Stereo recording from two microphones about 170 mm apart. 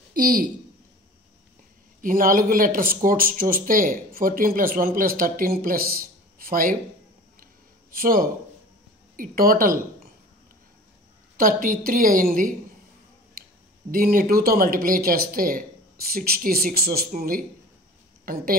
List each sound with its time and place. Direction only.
0.1 s speech: 60° right (ahead or behind)
2.0 s speech: 50° right (ahead or behind)
7.9 s speech: 55° right (ahead or behind)
11.3 s a woman's voice: 50° right (ahead or behind)
13.8 s speech: 55° right (ahead or behind)